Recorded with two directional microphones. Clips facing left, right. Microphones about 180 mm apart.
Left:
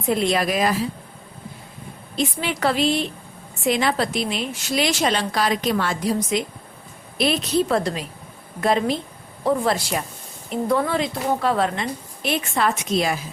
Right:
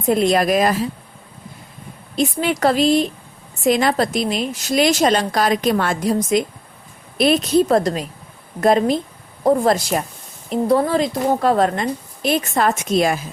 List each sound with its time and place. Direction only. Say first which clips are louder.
0.1 s a woman's voice: right 5 dB; 45° right (ahead or behind)
2.1 s a woman's voice: right 5 dB; 45° right (ahead or behind)